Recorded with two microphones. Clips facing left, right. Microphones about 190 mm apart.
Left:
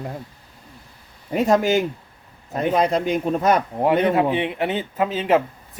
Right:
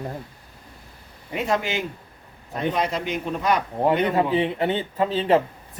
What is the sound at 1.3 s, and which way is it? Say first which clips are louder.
A man's voice: left 7 dB; 45° left (ahead or behind).